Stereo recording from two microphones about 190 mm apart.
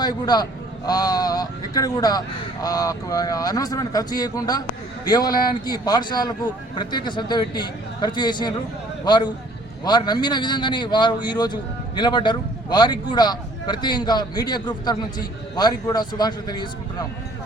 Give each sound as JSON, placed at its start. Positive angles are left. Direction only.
{"t": 0.0, "sound": "a man's voice", "side_deg": 20}
{"t": 5.3, "sound": "speech", "side_deg": 50}
{"t": 5.6, "sound": "a man's voice", "side_deg": 20}
{"t": 9.8, "sound": "a man's voice", "side_deg": 20}